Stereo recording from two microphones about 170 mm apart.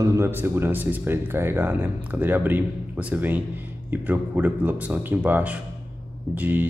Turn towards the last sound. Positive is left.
turn(degrees=-10)  # may be behind; listen again after turning